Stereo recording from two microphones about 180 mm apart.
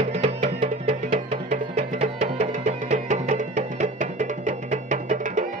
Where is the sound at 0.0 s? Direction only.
35° right (ahead or behind).